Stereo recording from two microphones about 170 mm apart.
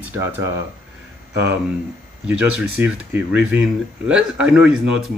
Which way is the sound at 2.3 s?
5° right (ahead or behind).